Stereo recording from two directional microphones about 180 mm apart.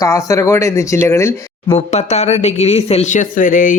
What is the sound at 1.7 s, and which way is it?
Speech, 40° left (ahead or behind).